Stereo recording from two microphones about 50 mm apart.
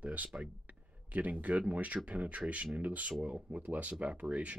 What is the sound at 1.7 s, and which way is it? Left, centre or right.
Speech, right.